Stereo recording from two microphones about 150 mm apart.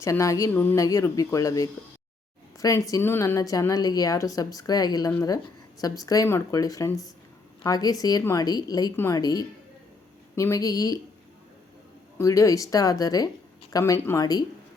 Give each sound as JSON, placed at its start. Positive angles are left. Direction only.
{"t": 0.0, "sound": "a woman's voice", "side_deg": 20}
{"t": 12.1, "sound": "a woman's voice", "side_deg": 20}